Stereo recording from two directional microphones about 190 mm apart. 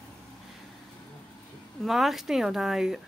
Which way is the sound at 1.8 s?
Centre (ahead or behind).